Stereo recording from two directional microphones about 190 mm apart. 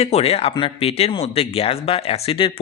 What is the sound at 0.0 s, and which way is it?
Speech, 35° left (ahead or behind).